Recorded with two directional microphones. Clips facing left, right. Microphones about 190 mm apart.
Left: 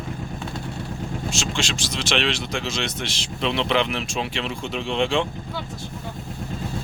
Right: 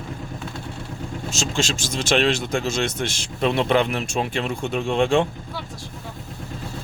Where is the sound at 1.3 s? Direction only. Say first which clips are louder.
Right 6 dB; 45° right (ahead or behind).